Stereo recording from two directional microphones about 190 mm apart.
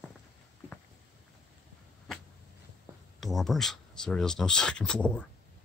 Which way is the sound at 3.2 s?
Centre (ahead or behind).